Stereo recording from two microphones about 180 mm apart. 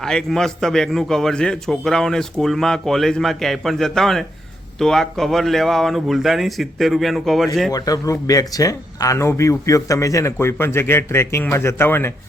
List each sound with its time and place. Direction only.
0.0 s a man's voice: 5° left (ahead or behind)
7.7 s speech: 20° left (ahead or behind)